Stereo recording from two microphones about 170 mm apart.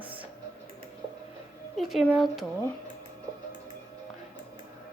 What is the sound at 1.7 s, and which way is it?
Speech, centre (ahead or behind).